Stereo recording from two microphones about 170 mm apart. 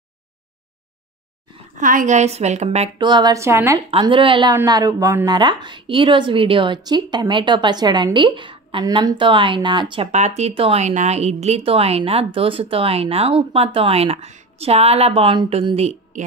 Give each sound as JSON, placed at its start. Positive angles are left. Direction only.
{"t": 1.8, "sound": "a woman's voice", "side_deg": -50}
{"t": 3.0, "sound": "a woman's voice", "side_deg": -25}
{"t": 3.9, "sound": "a woman's voice", "side_deg": -30}
{"t": 10.1, "sound": "speech", "side_deg": -40}